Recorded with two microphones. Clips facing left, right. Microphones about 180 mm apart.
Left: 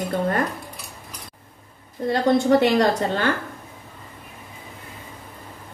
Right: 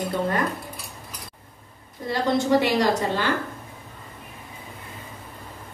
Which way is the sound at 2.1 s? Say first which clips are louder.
Left 3 dB; 55° left (ahead or behind).